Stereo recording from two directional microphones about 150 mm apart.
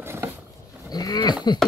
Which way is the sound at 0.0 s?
15° right (ahead or behind).